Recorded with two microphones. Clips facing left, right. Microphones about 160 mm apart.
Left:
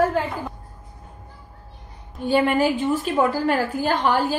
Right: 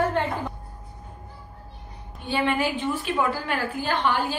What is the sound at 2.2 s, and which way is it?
A woman's voice, 40° left (ahead or behind).